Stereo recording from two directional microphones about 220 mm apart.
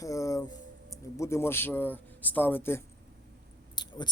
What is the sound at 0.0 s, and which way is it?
Keys jangling, 15° left (ahead or behind).